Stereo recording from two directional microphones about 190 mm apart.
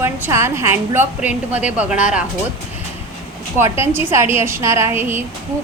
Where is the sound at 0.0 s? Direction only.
15° right (ahead or behind).